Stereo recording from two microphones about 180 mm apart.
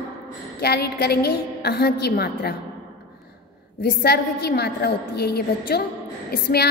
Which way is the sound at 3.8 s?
60° left (ahead or behind).